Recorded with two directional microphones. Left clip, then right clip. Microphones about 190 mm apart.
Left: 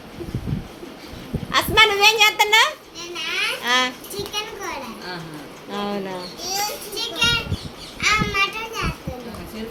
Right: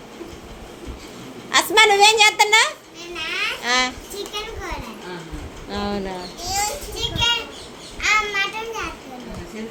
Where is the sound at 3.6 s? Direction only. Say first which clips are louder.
Even; 10° right (ahead or behind).